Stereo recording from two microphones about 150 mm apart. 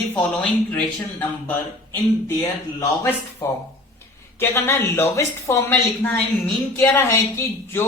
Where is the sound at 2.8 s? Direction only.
15° left (ahead or behind).